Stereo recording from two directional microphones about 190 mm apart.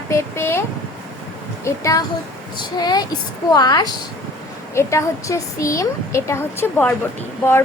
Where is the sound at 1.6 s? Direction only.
15° left (ahead or behind).